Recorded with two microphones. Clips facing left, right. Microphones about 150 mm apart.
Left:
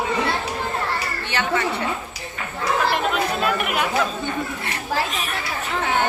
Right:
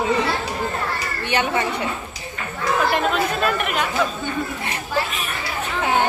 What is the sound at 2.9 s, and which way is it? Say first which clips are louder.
Speech: right 1 dB; centre (ahead or behind).